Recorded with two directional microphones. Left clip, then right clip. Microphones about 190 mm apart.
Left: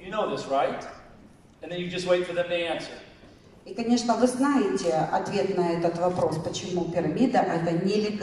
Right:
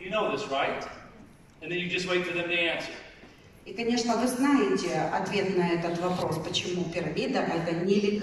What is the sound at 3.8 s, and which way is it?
A man's voice, 20° left (ahead or behind).